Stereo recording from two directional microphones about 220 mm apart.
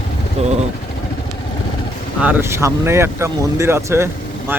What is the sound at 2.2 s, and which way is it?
Speech, 10° right (ahead or behind).